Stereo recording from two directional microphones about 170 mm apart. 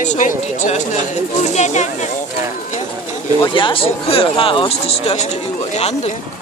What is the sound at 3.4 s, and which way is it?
Speech, 30° left (ahead or behind).